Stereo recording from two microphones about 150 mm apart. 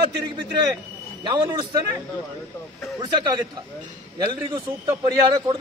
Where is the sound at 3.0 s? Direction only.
30° right (ahead or behind).